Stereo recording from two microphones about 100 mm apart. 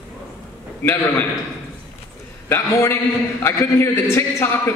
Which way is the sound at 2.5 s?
25° left (ahead or behind).